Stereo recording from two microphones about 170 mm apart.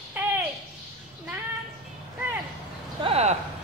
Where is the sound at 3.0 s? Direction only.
40° right (ahead or behind).